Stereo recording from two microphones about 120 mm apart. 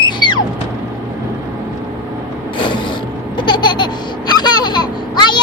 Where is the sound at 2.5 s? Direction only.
45° left (ahead or behind).